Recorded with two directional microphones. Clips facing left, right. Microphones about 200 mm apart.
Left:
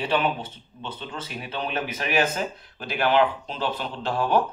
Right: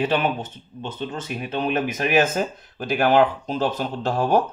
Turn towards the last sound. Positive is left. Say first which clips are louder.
# right 3 dB
turn(degrees=-45)  # may be behind; listen again after turning